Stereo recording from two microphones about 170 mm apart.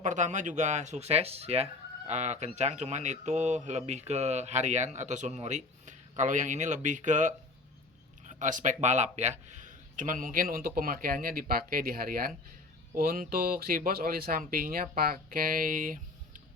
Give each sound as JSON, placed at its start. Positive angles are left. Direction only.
{"t": 0.0, "sound": "speech", "side_deg": -45}